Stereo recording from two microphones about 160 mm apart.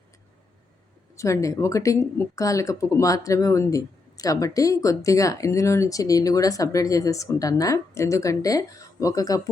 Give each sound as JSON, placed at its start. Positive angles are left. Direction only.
{"t": 1.1, "sound": "speech", "side_deg": 20}